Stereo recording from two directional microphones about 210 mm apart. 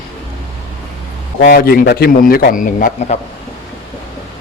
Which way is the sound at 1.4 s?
45° left (ahead or behind).